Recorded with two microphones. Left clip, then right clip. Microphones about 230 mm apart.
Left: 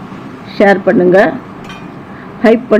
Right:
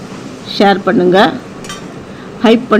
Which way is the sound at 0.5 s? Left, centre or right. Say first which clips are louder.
Left 2 dB; centre.